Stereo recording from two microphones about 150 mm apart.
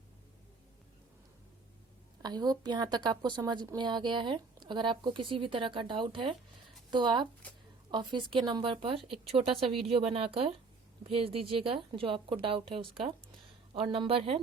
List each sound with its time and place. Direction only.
2.2 s a woman's voice: 25° right (ahead or behind)